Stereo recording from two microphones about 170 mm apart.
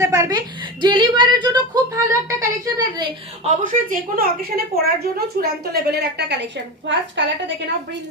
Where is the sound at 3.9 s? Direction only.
60° right (ahead or behind); by 7.3 s 90° right.